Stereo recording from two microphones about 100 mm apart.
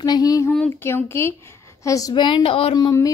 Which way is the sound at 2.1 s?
50° left (ahead or behind).